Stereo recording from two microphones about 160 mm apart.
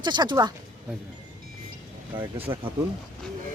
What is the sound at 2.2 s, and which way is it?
Speech, 35° right (ahead or behind).